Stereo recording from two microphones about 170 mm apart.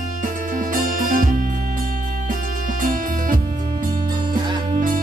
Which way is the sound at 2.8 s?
55° right (ahead or behind).